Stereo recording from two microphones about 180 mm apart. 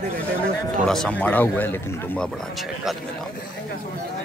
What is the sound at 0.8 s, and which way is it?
Speech, 5° left (ahead or behind).